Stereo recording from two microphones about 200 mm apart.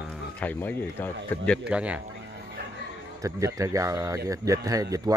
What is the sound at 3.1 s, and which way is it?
Speech, 15° right (ahead or behind).